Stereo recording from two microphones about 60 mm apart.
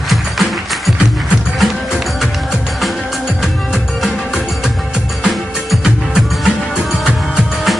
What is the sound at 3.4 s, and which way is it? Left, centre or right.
Music, centre.